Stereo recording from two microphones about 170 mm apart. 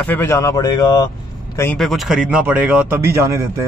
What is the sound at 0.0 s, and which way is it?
Speech, 10° left (ahead or behind).